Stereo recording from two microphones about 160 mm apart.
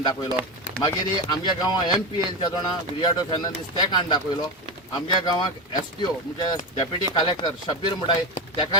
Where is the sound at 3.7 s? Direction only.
25° left (ahead or behind).